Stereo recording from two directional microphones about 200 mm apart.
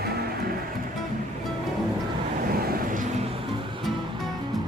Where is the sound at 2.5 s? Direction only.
50° right (ahead or behind).